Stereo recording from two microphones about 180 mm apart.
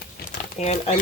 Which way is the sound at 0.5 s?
40° left (ahead or behind).